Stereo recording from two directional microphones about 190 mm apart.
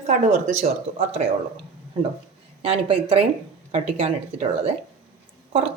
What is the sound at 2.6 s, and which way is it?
Speech, 30° right (ahead or behind).